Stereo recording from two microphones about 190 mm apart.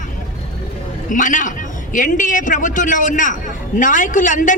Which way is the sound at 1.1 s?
45° left (ahead or behind).